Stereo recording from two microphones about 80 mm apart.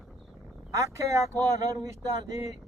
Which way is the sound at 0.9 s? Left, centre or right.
Right.